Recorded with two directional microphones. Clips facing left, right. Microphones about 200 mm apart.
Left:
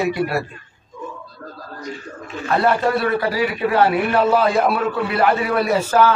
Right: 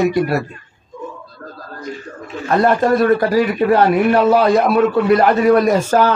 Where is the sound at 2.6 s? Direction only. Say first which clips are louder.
Right 5 dB; 45° right (ahead or behind).